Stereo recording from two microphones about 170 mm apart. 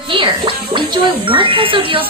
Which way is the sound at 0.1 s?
30° right (ahead or behind).